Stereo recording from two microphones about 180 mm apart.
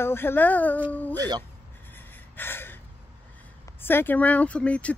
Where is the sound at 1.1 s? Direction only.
20° right (ahead or behind).